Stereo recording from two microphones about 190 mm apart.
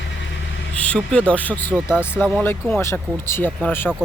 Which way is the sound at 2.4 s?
10° left (ahead or behind).